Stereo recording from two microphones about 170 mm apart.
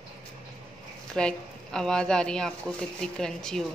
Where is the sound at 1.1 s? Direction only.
5° left (ahead or behind).